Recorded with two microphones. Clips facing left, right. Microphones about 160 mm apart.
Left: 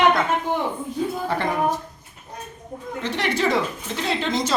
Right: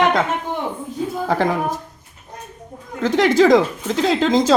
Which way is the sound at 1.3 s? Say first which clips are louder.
Right 5 dB; 90° right.